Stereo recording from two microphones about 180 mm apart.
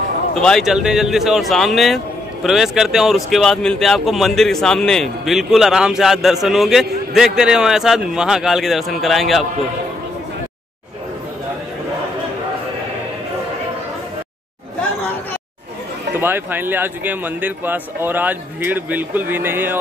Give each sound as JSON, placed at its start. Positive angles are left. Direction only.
{"t": 0.3, "sound": "speech", "side_deg": 5}
{"t": 16.2, "sound": "a man's voice", "side_deg": -10}